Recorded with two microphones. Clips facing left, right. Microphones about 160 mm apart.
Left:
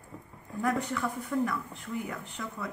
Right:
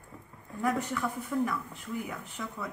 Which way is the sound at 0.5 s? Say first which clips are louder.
Left 1 dB; centre (ahead or behind).